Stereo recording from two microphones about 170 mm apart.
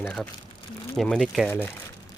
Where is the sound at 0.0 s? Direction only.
10° left (ahead or behind).